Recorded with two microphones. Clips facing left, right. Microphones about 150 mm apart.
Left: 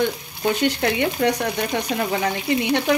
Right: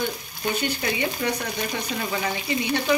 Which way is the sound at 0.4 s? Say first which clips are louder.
Left 7 dB; 65° left (ahead or behind).